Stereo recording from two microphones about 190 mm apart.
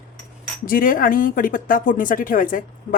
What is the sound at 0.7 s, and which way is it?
Speech, 45° left (ahead or behind).